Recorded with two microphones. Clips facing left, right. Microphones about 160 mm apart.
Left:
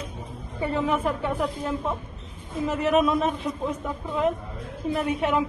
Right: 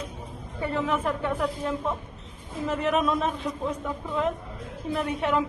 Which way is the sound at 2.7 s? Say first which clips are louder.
Left 3 dB; 5° left (ahead or behind).